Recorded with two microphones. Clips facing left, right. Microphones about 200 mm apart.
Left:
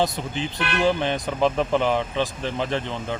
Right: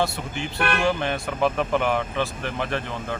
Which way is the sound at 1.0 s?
20° left (ahead or behind).